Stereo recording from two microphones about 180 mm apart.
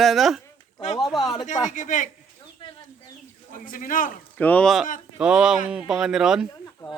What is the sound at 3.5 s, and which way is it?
Speech, 50° left (ahead or behind).